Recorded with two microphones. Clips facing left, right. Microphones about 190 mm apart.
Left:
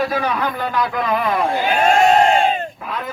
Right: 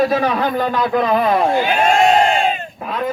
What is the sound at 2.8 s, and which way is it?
Speech, 30° right (ahead or behind).